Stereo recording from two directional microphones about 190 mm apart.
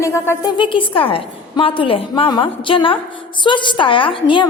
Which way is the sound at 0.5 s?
25° left (ahead or behind).